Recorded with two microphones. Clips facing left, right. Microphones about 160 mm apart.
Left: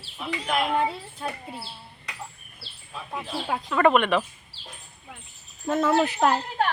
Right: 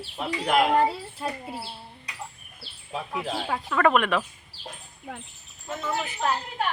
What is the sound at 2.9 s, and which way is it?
Speech, 90° right.